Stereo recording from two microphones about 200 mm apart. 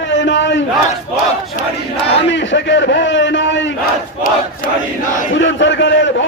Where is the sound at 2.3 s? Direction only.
65° left (ahead or behind).